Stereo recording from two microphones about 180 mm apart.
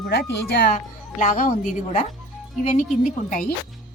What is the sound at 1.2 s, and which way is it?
Speech, 45° left (ahead or behind).